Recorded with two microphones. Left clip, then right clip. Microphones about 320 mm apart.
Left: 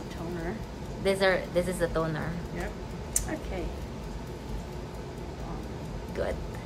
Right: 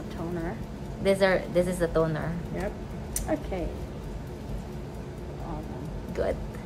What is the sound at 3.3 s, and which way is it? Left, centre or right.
Speech, centre.